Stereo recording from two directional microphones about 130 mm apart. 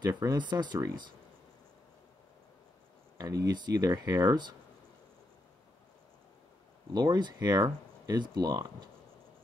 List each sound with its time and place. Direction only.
0.1 s speech: 30° right (ahead or behind)
3.2 s speech: 30° right (ahead or behind)
6.9 s speech: 35° right (ahead or behind)